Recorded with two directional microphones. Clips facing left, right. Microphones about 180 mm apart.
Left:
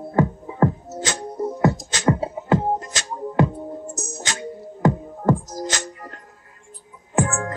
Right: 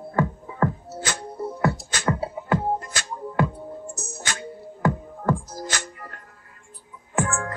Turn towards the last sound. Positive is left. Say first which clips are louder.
# left 3 dB
turn(degrees=20)  # may be behind; listen again after turning